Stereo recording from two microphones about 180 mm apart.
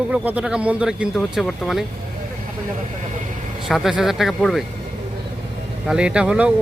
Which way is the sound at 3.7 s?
Centre (ahead or behind).